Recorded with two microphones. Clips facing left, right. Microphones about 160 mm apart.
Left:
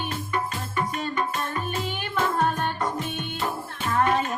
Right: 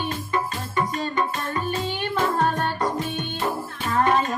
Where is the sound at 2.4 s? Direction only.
35° right (ahead or behind).